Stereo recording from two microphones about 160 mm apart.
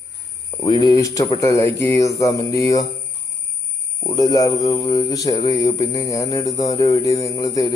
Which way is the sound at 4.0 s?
25° left (ahead or behind).